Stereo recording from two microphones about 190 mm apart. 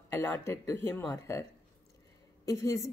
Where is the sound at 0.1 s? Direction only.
10° left (ahead or behind).